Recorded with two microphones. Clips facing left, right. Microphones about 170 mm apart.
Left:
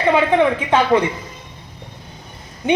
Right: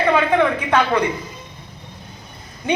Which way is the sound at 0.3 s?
20° left (ahead or behind).